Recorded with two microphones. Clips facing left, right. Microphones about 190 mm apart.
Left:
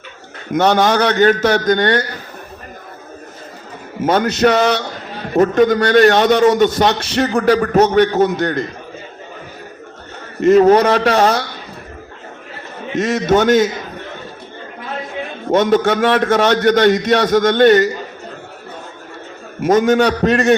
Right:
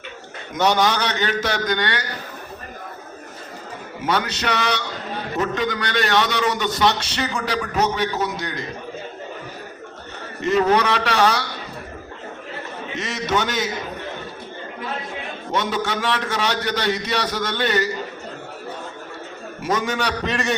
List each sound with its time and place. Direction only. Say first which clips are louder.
0.5 s a man's voice: left 6 dB; 55° left (ahead or behind)
4.0 s a man's voice: left 10 dB; 50° left (ahead or behind)
10.4 s a man's voice: left 9 dB; 45° left (ahead or behind)
13.0 s a man's voice: left 10 dB; 50° left (ahead or behind)
15.5 s a man's voice: left 11 dB; 50° left (ahead or behind)
19.6 s a man's voice: left 11 dB; 50° left (ahead or behind)